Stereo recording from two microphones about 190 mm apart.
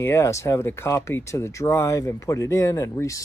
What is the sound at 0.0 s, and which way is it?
Speech, 15° left (ahead or behind).